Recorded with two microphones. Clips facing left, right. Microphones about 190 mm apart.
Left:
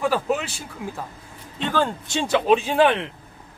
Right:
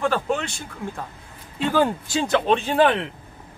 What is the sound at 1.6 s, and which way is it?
Speech, 10° right (ahead or behind).